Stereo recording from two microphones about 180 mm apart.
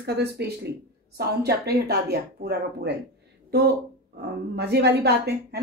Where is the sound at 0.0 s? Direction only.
65° right (ahead or behind).